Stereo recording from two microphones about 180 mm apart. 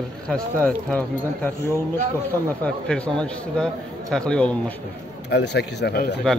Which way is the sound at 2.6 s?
5° left (ahead or behind).